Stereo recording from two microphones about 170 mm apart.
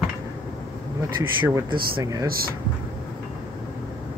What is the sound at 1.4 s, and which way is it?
Speech, 25° right (ahead or behind).